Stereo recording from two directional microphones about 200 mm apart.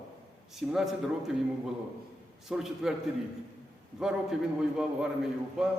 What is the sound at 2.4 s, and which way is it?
Speech, centre (ahead or behind).